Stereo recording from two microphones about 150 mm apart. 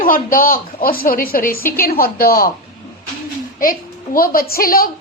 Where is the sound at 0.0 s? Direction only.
70° left (ahead or behind).